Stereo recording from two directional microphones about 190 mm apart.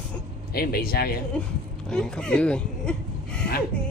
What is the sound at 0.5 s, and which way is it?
Speech, 55° left (ahead or behind).